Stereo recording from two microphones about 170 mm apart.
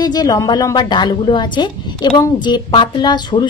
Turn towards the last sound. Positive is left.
turn(degrees=25)  # may be behind; listen again after turning